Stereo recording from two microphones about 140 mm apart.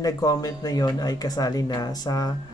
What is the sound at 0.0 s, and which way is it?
Speech, 25° left (ahead or behind).